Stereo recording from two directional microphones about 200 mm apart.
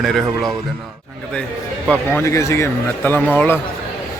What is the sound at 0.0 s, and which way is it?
Speech, centre (ahead or behind).